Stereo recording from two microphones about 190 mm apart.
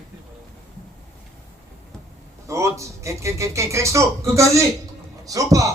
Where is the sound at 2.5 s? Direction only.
15° right (ahead or behind).